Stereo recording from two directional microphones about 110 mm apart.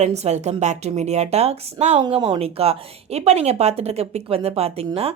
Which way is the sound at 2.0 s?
50° right (ahead or behind).